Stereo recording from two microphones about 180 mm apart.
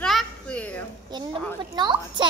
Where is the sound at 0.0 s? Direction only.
Centre (ahead or behind).